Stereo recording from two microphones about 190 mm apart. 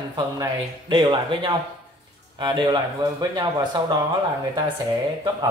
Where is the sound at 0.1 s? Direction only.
25° right (ahead or behind).